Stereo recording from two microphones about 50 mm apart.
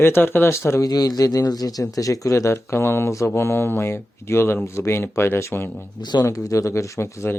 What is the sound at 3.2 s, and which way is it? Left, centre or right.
Speech, left.